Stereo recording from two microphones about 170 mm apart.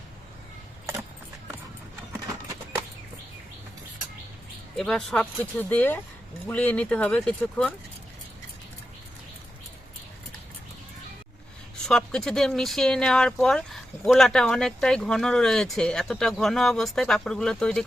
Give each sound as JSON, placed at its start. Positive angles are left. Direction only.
{"t": 4.8, "sound": "speech", "side_deg": 5}
{"t": 11.8, "sound": "speech", "side_deg": 5}